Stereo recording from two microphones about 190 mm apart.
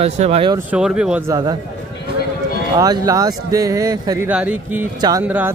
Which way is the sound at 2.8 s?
20° right (ahead or behind).